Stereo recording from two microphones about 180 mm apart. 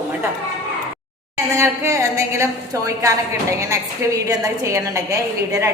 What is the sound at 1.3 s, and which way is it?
A woman's voice, 15° right (ahead or behind).